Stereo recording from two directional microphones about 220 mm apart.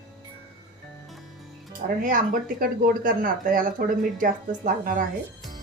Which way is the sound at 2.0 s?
40° right (ahead or behind).